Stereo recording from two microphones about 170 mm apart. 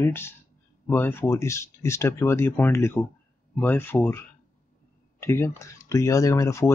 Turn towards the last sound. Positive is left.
turn(degrees=15)  # may be behind; listen again after turning